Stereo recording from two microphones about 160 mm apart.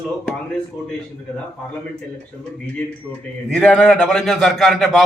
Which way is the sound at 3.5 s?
5° left (ahead or behind).